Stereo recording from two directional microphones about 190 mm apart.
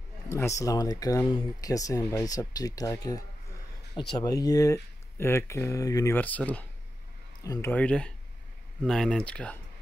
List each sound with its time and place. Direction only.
0.3 s speech: 15° left (ahead or behind)
7.7 s speech: 5° left (ahead or behind)